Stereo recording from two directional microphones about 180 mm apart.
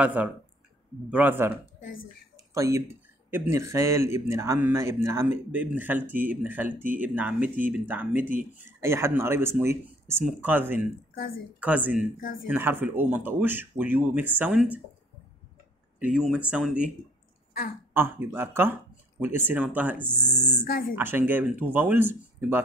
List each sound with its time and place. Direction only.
0.0 s speech: 10° right (ahead or behind)
2.3 s a sound: 15° right (ahead or behind)
3.3 s speech: 15° right (ahead or behind)
16.0 s speech: 5° right (ahead or behind)
17.9 s speech: 15° right (ahead or behind)